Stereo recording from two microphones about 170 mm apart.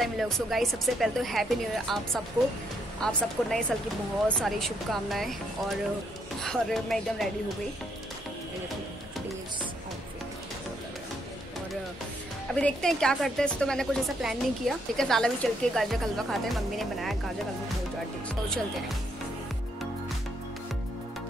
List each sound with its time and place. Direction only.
0.0 s a woman's voice: centre (ahead or behind)
12.5 s a woman's voice: 5° left (ahead or behind)
18.3 s a woman's voice: 5° left (ahead or behind)